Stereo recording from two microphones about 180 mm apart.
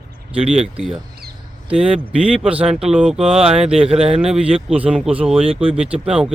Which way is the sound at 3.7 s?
35° right (ahead or behind).